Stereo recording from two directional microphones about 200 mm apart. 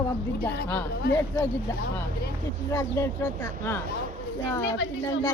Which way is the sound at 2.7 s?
15° left (ahead or behind).